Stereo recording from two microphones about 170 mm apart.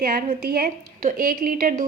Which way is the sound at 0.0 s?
55° right (ahead or behind).